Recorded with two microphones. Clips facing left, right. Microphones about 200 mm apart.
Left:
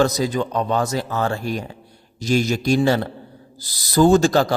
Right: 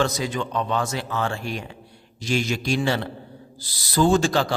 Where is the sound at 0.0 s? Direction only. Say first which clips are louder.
Left 5 dB; 40° left (ahead or behind).